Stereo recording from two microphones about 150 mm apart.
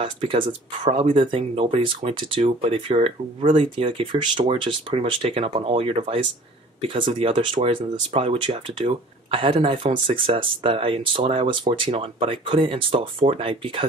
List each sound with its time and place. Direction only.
0.0 s speech: 35° right (ahead or behind)